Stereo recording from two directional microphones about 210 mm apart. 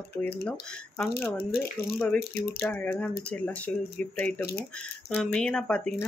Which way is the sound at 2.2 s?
50° left (ahead or behind).